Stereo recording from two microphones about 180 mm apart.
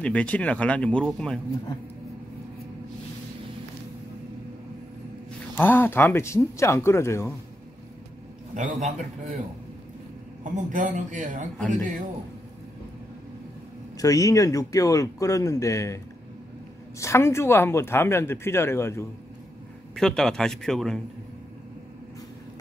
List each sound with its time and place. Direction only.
0.0 s speech: 5° left (ahead or behind)
5.6 s speech: 10° left (ahead or behind)
8.5 s speech: 45° right (ahead or behind)
10.4 s speech: 45° right (ahead or behind)
13.9 s speech: 20° left (ahead or behind)
17.0 s speech: 15° left (ahead or behind)
20.0 s speech: 5° left (ahead or behind)